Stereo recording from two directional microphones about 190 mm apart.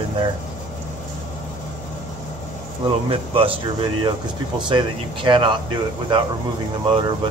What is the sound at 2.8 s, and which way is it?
Speech, 30° right (ahead or behind).